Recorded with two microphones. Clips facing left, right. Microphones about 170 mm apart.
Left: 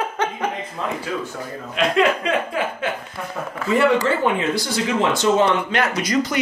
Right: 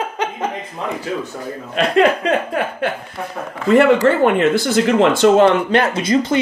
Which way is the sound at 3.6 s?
60° right (ahead or behind).